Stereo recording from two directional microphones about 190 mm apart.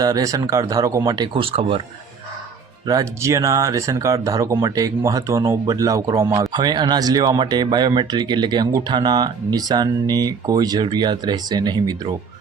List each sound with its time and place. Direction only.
0.0 s speech: 20° right (ahead or behind)
2.8 s speech: 15° right (ahead or behind)